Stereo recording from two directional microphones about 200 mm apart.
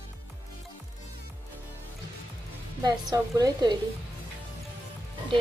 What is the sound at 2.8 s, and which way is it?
Speech, 20° right (ahead or behind).